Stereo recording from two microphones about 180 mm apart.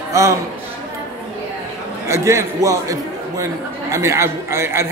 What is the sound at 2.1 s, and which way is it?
A man's voice, 15° right (ahead or behind).